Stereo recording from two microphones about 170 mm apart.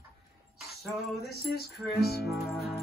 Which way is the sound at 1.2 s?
70° left (ahead or behind).